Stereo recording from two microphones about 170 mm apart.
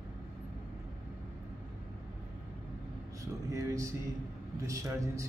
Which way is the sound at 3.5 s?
20° right (ahead or behind).